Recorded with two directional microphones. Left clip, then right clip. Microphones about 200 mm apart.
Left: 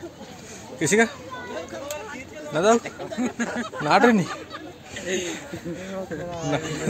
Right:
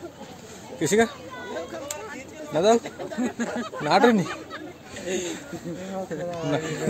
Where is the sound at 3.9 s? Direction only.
10° left (ahead or behind).